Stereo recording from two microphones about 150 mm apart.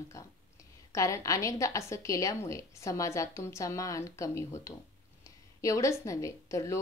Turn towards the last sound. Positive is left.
turn(degrees=20)  # may be behind; listen again after turning